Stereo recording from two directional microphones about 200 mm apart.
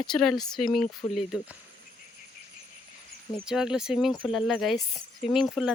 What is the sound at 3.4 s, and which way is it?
Speech, 5° right (ahead or behind).